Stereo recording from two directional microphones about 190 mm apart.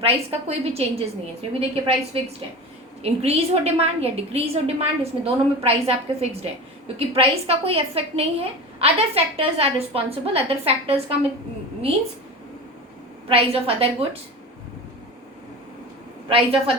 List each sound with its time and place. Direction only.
0.0 s a woman's voice: 30° right (ahead or behind)
13.2 s a woman's voice: 30° right (ahead or behind)
16.3 s a woman's voice: 30° right (ahead or behind)